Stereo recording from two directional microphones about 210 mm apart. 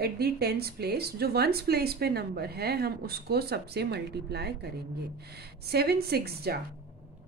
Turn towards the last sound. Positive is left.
turn(degrees=-50)  # may be behind; listen again after turning